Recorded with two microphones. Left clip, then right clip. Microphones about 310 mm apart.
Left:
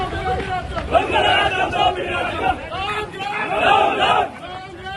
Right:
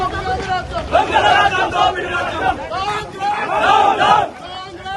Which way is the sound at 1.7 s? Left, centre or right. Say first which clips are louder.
Right 3 dB; centre.